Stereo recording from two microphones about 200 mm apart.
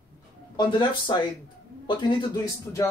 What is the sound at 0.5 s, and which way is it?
A man's voice, 20° left (ahead or behind).